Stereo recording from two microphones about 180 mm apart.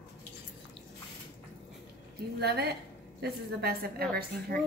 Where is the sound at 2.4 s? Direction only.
65° right (ahead or behind).